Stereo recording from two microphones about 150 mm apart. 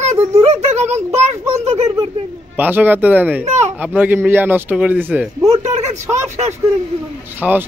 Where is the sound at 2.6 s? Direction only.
10° right (ahead or behind).